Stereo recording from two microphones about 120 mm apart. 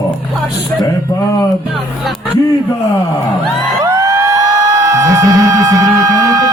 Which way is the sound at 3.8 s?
25° right (ahead or behind).